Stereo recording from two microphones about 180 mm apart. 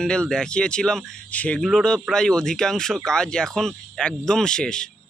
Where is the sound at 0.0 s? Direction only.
5° left (ahead or behind).